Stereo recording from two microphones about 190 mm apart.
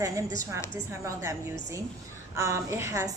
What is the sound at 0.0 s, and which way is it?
A woman's voice, 15° right (ahead or behind).